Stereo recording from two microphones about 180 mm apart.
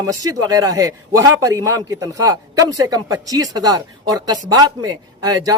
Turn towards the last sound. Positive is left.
turn(degrees=-20)  # may be behind; listen again after turning